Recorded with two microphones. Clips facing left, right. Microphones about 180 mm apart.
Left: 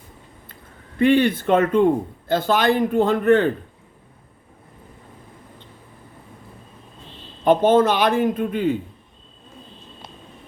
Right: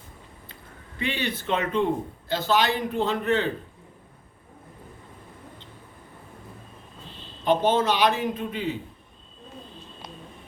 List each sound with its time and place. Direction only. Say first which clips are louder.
0.9 s a man's voice: left 13 dB; 50° left (ahead or behind)
7.4 s a man's voice: left 6 dB; 50° left (ahead or behind)